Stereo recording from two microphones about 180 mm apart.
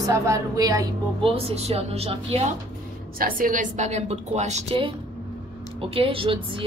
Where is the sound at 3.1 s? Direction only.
50° right (ahead or behind).